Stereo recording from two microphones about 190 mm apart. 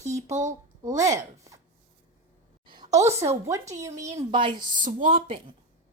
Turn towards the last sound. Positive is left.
turn(degrees=-45)  # may be behind; listen again after turning